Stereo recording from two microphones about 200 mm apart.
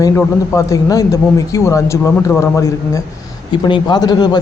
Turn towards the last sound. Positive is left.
turn(degrees=20)  # may be behind; listen again after turning